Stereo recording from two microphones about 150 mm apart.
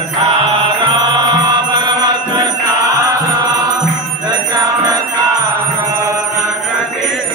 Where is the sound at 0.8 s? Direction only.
30° right (ahead or behind).